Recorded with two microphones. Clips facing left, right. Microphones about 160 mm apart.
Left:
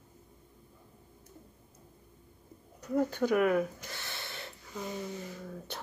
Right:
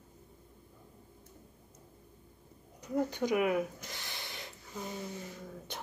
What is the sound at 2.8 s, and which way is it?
Speech, 15° right (ahead or behind).